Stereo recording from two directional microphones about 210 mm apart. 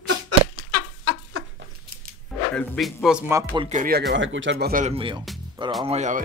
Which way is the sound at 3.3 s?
20° right (ahead or behind).